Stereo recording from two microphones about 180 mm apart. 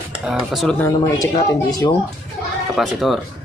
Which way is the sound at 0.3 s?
Centre (ahead or behind).